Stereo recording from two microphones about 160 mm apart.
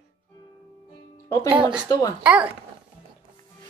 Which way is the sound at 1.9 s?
20° left (ahead or behind).